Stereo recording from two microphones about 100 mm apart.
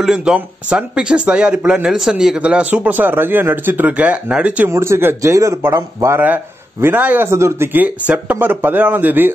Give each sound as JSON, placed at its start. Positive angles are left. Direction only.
{"t": 0.0, "sound": "speech", "side_deg": -5}
{"t": 4.6, "sound": "speech", "side_deg": -25}
{"t": 6.2, "sound": "speech", "side_deg": -20}
{"t": 7.2, "sound": "speech", "side_deg": -30}